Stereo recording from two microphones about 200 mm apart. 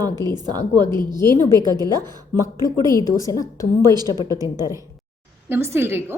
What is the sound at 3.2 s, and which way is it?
Speech, 15° left (ahead or behind).